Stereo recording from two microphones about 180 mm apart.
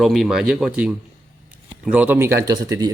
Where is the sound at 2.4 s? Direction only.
20° right (ahead or behind).